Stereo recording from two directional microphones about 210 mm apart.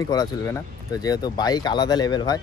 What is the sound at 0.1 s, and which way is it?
Speech, 20° left (ahead or behind).